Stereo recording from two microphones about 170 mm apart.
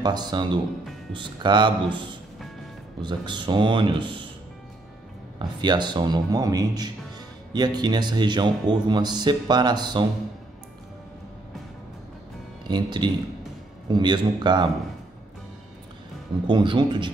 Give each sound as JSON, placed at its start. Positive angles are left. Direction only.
{"t": 0.0, "sound": "speech", "side_deg": -25}
{"t": 5.4, "sound": "speech", "side_deg": -25}
{"t": 12.6, "sound": "speech", "side_deg": -25}
{"t": 16.4, "sound": "speech", "side_deg": -25}